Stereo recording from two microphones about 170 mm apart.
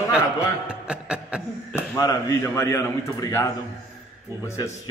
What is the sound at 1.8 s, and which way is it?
A man's voice, 15° left (ahead or behind).